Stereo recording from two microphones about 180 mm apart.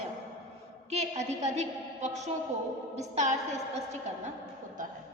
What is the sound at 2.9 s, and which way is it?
A woman's voice, 40° right (ahead or behind).